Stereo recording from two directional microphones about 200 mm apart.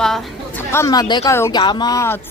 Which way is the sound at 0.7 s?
15° left (ahead or behind).